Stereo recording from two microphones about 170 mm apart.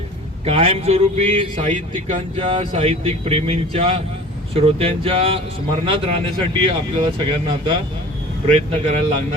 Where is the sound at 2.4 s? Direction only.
35° right (ahead or behind).